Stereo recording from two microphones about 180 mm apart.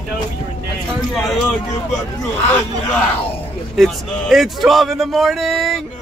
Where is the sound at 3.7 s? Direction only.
Centre (ahead or behind).